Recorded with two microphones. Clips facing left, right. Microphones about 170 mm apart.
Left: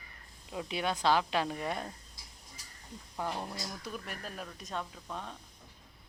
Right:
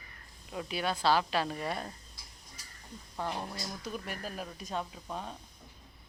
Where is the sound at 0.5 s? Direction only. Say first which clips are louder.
Even; 15° left (ahead or behind).